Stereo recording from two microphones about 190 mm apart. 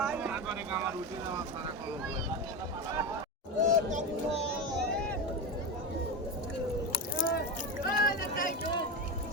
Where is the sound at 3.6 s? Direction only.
40° right (ahead or behind).